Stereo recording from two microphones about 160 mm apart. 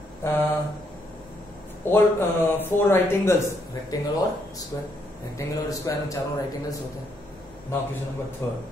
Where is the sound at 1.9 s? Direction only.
15° left (ahead or behind).